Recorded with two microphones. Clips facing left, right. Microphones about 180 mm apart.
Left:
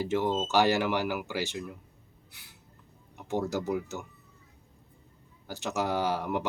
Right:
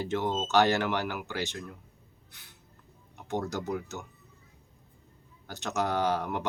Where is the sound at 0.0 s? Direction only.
10° left (ahead or behind).